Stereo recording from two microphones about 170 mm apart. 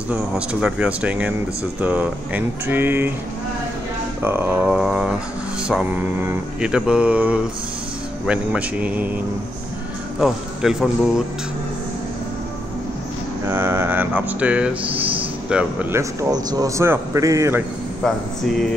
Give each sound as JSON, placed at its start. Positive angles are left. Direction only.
{"t": 0.1, "sound": "a man's voice", "side_deg": -5}
{"t": 4.2, "sound": "a man's voice", "side_deg": -10}
{"t": 10.2, "sound": "speech", "side_deg": -5}
{"t": 13.5, "sound": "mantra", "side_deg": -15}
{"t": 15.5, "sound": "a man's voice", "side_deg": -10}